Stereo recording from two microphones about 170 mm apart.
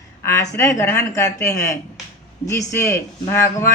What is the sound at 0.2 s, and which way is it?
Speech, 15° left (ahead or behind).